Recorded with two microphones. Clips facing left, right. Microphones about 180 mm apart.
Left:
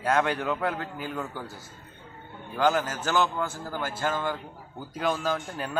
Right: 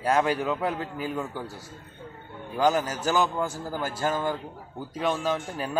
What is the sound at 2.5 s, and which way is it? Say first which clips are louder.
Speech: right 1 dB; 10° right (ahead or behind).